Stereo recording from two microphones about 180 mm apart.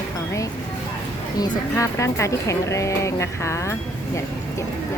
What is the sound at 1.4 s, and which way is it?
Speech, 15° left (ahead or behind).